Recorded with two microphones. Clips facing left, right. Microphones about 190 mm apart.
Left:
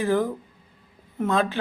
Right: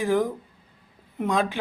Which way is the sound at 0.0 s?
15° right (ahead or behind).